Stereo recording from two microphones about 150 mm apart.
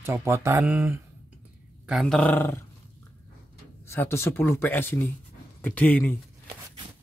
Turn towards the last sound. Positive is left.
turn(degrees=10)  # may be behind; listen again after turning